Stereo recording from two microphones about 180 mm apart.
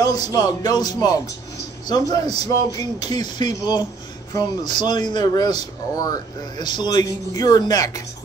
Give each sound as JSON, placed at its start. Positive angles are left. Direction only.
{"t": 0.0, "sound": "speech", "side_deg": 20}